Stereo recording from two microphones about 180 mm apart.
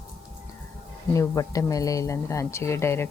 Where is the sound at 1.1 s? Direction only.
20° left (ahead or behind).